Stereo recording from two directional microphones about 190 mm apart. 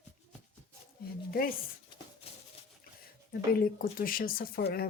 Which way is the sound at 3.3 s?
50° left (ahead or behind).